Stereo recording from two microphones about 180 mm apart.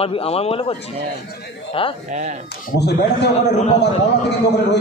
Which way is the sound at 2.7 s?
70° left (ahead or behind).